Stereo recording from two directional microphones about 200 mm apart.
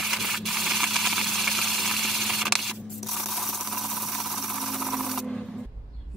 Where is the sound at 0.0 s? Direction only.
Centre (ahead or behind).